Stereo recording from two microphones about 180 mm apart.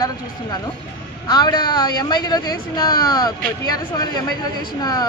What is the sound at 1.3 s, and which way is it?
Speech, 25° left (ahead or behind).